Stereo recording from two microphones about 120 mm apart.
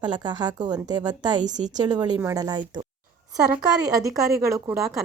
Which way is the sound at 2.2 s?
25° right (ahead or behind).